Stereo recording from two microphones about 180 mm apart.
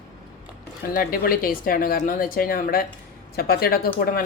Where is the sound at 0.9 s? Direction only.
55° left (ahead or behind).